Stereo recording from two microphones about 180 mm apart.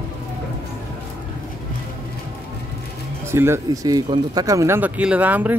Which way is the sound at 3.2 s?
15° right (ahead or behind).